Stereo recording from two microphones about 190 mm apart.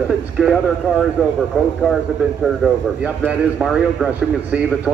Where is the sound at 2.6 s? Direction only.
5° right (ahead or behind).